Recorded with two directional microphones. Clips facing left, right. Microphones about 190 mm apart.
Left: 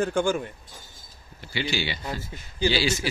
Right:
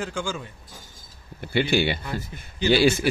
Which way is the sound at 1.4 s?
55° right (ahead or behind).